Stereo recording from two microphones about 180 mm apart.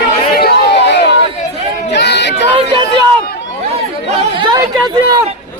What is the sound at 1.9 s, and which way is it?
Chatter, 70° left (ahead or behind).